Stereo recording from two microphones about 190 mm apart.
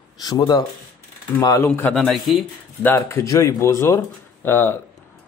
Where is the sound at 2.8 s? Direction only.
10° left (ahead or behind).